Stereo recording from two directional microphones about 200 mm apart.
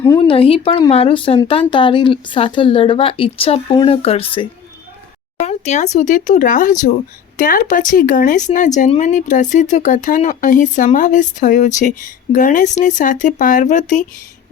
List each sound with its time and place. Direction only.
0.2 s speech: 25° left (ahead or behind)